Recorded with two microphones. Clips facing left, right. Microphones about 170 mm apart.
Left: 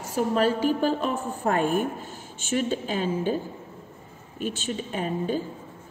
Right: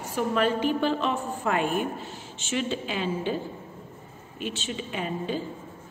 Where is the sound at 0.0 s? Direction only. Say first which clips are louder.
Left 2 dB; 40° left (ahead or behind).